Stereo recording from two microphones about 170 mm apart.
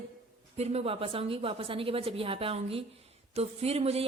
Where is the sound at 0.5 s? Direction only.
40° right (ahead or behind).